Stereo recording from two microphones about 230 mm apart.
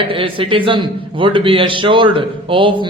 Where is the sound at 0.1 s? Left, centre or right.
Right.